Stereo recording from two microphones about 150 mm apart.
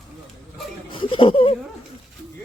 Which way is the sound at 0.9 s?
35° left (ahead or behind).